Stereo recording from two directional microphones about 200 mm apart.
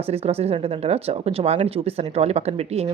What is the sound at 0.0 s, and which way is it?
Speech, 30° right (ahead or behind).